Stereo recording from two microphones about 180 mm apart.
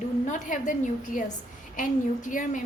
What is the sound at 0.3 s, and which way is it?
A woman's voice, 45° left (ahead or behind).